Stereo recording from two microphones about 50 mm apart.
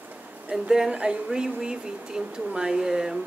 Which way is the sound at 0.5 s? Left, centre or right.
Centre.